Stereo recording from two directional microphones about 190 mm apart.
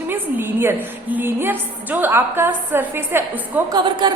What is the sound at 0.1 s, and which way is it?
A woman's voice, 10° right (ahead or behind).